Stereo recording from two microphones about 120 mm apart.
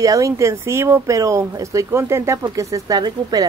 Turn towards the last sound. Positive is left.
turn(degrees=-30)  # may be behind; listen again after turning